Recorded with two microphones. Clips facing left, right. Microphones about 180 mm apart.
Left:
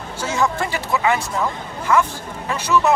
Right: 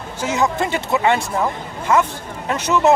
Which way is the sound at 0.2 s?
20° right (ahead or behind).